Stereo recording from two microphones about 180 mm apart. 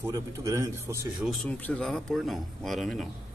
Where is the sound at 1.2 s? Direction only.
5° left (ahead or behind).